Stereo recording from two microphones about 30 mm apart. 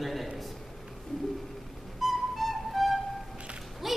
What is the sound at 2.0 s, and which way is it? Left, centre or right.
Music, centre.